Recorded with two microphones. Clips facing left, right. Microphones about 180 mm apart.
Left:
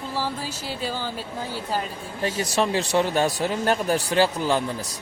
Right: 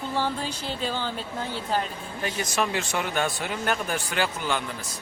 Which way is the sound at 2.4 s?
35° left (ahead or behind).